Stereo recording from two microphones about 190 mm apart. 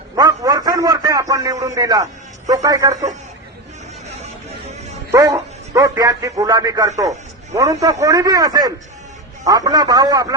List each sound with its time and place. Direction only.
0.2 s a man's voice: 20° right (ahead or behind)
5.1 s a man's voice: 15° right (ahead or behind)